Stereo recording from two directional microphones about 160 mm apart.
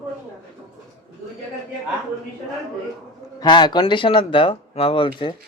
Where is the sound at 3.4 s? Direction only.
25° left (ahead or behind).